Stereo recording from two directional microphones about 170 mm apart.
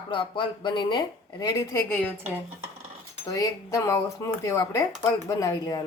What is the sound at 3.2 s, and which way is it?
Speech, 20° left (ahead or behind).